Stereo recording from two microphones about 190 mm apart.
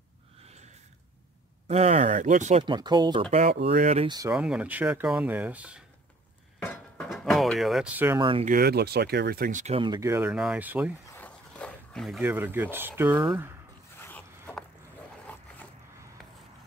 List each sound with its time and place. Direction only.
1.7 s speech: 35° right (ahead or behind)
2.6 s speech: 25° right (ahead or behind)
3.4 s speech: 60° right (ahead or behind)
3.7 s speech: 35° right (ahead or behind)
4.3 s speech: 5° right (ahead or behind)
6.6 s a sound: 5° left (ahead or behind); by 8.2 s 10° right (ahead or behind)
8.2 s speech: 25° right (ahead or behind)
8.5 s speech: 55° right (ahead or behind)
9.8 s speech: 20° right (ahead or behind)
11.1 s a sound: 10° left (ahead or behind)
12.2 s speech: 10° right (ahead or behind)
13.9 s zipper: 10° left (ahead or behind)